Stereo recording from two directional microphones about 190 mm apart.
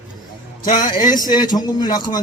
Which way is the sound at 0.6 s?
45° left (ahead or behind).